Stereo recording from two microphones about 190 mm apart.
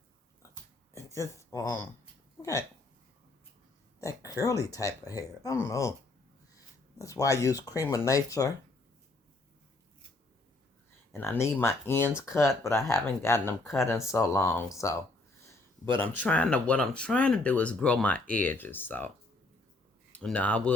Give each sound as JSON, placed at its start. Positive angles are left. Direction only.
{"t": 0.9, "sound": "speech", "side_deg": 15}
{"t": 4.0, "sound": "speech", "side_deg": 15}
{"t": 7.0, "sound": "speech", "side_deg": 15}
{"t": 11.1, "sound": "speech", "side_deg": 15}
{"t": 15.9, "sound": "speech", "side_deg": 10}
{"t": 20.1, "sound": "speech", "side_deg": 5}